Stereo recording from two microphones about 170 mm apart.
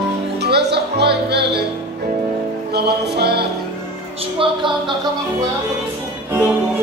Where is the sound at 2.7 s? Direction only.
75° right (ahead or behind).